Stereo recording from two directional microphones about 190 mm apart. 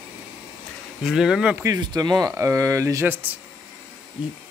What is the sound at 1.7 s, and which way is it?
Speech, 20° right (ahead or behind).